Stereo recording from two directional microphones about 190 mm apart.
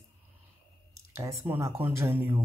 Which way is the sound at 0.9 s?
15° right (ahead or behind).